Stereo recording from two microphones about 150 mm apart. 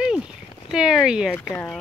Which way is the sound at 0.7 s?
5° right (ahead or behind).